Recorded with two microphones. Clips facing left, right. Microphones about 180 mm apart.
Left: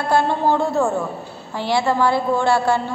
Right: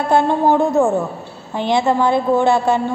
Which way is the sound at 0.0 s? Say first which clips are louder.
Right 3 dB; 20° right (ahead or behind).